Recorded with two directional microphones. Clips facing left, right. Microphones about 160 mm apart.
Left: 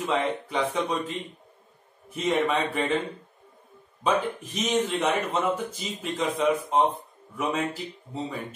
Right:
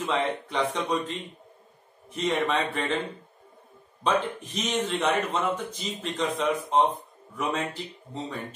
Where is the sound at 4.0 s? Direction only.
5° left (ahead or behind).